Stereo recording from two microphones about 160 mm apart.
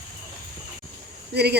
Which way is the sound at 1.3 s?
90° right.